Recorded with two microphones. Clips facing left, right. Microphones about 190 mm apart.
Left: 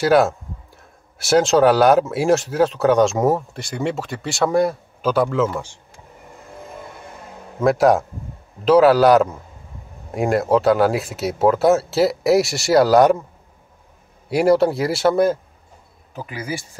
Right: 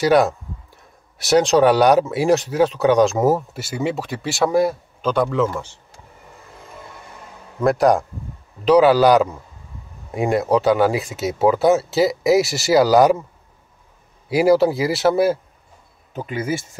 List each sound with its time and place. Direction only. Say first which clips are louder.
0.0 s speech: even; centre (ahead or behind)
7.6 s speech: left 1 dB; centre (ahead or behind)
14.3 s speech: right 1 dB; centre (ahead or behind)
16.2 s speech: right 4 dB; 25° right (ahead or behind)